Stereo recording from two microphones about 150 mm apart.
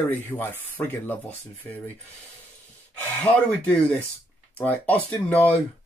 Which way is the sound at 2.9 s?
10° left (ahead or behind).